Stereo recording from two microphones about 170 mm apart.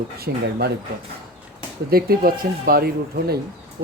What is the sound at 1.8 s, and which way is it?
Speech, 60° right (ahead or behind).